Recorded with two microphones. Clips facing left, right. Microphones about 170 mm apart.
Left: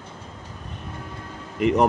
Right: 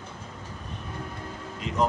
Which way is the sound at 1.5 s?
65° left (ahead or behind).